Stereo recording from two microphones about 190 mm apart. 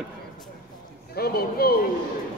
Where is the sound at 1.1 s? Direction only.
55° left (ahead or behind).